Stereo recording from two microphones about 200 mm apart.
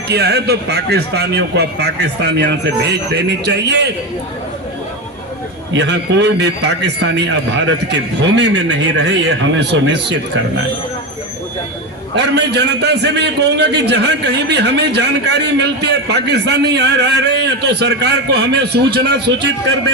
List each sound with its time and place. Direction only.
0.1 s a man's voice: 55° right (ahead or behind)
5.7 s a man's voice: 60° right (ahead or behind)
12.1 s a man's voice: 55° right (ahead or behind)